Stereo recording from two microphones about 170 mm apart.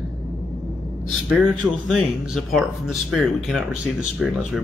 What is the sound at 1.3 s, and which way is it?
Speech, 5° right (ahead or behind).